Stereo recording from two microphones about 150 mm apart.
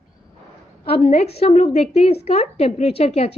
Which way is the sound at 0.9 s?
45° left (ahead or behind).